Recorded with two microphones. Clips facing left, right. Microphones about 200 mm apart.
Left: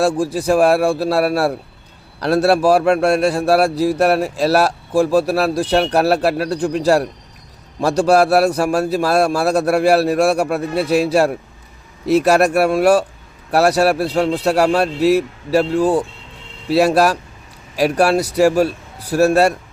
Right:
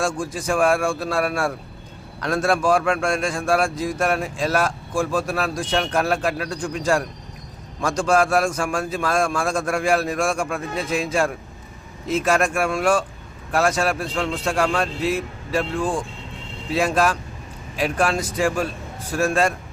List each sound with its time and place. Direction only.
0.0 s a man's voice: 35° left (ahead or behind)
18.2 s speech: 70° left (ahead or behind)
18.4 s a man's voice: 40° left (ahead or behind)